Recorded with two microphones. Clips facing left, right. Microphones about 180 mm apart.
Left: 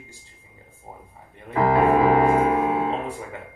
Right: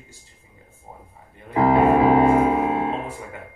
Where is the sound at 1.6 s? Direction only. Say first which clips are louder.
Right 2 dB; 20° right (ahead or behind).